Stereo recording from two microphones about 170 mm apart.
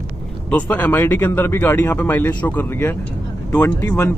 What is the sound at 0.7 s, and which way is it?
A man's voice, 10° left (ahead or behind).